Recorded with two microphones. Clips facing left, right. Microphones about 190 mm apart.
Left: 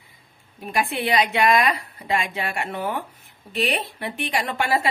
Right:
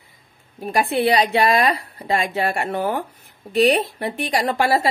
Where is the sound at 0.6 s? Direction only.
40° right (ahead or behind).